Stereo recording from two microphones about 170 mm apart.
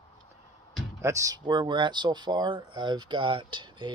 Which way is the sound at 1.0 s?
20° right (ahead or behind).